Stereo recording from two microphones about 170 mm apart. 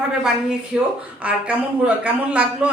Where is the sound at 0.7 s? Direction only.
5° right (ahead or behind).